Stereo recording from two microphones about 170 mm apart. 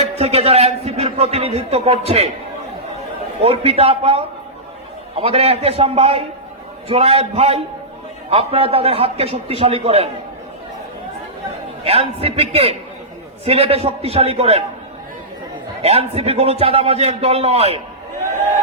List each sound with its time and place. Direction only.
0.0 s a man's voice: 40° right (ahead or behind)
3.4 s a man's voice: 35° right (ahead or behind)
5.2 s a man's voice: 35° right (ahead or behind)
11.8 s a man's voice: 35° right (ahead or behind)
15.8 s a man's voice: 40° right (ahead or behind)